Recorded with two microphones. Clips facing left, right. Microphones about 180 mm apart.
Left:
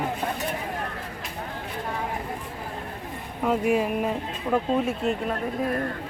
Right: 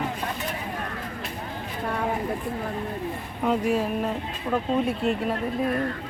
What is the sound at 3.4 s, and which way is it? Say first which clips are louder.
Speech: left 1 dB; 10° left (ahead or behind).